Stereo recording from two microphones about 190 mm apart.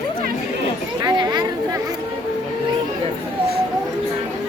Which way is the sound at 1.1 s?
20° right (ahead or behind).